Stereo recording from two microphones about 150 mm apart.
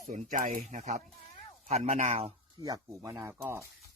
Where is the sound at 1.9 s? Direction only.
45° right (ahead or behind).